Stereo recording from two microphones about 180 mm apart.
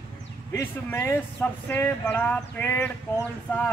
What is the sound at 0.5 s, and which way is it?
Speech, 15° left (ahead or behind).